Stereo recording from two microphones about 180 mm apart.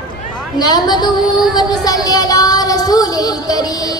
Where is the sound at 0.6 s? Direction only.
25° left (ahead or behind).